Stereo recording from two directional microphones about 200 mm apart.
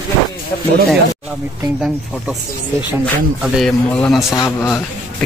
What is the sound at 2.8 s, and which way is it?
A man's voice, 5° right (ahead or behind).